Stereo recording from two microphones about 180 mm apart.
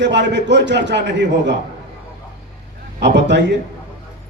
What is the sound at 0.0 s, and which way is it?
A man's voice, 75° right (ahead or behind).